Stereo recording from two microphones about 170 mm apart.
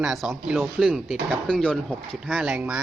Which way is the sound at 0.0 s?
5° right (ahead or behind).